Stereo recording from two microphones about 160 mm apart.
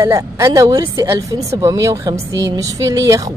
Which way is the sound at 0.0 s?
20° right (ahead or behind).